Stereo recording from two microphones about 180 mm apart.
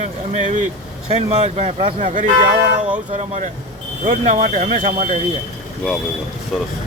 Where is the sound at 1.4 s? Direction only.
35° right (ahead or behind).